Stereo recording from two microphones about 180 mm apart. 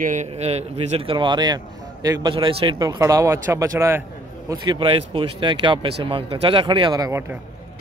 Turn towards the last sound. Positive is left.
turn(degrees=-15)  # may be behind; listen again after turning